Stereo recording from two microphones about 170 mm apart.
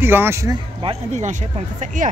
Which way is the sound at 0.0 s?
15° right (ahead or behind).